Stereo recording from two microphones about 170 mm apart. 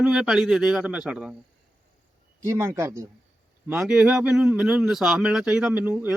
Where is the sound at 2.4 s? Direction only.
15° right (ahead or behind).